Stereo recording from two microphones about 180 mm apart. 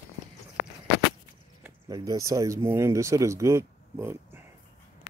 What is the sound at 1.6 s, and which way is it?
Speech, 20° right (ahead or behind).